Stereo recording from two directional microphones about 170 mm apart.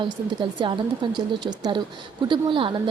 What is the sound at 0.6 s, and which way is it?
Speech, 30° right (ahead or behind).